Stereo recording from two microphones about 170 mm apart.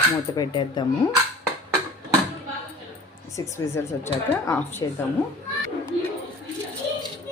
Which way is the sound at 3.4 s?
15° left (ahead or behind).